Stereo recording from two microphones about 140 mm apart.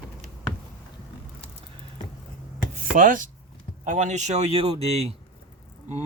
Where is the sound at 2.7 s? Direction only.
70° right (ahead or behind).